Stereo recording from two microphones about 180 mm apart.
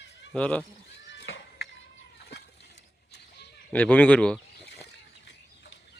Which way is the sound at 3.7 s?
10° left (ahead or behind).